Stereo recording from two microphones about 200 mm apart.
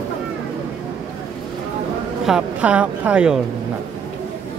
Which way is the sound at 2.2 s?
5° right (ahead or behind).